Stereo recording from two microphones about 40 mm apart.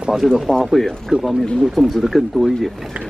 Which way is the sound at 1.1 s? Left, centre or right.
Right.